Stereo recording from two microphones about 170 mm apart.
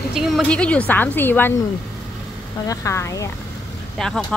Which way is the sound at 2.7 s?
20° left (ahead or behind).